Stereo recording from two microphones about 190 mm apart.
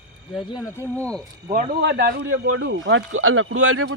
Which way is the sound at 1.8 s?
60° right (ahead or behind).